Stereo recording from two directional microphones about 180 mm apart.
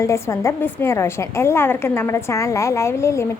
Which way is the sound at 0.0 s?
15° left (ahead or behind).